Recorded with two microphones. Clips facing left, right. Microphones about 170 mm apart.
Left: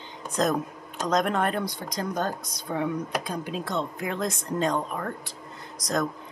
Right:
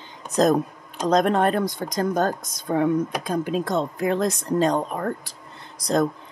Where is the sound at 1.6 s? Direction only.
45° right (ahead or behind).